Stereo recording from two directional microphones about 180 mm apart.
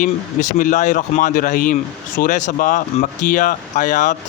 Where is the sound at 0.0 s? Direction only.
45° left (ahead or behind).